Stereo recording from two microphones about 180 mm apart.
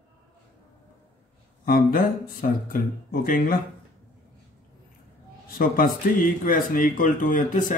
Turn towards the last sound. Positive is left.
turn(degrees=50)  # may be behind; listen again after turning